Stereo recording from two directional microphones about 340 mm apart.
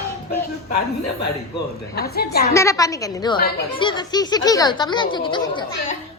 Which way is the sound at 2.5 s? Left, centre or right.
Centre.